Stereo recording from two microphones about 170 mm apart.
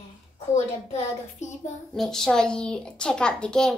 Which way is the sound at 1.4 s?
45° left (ahead or behind).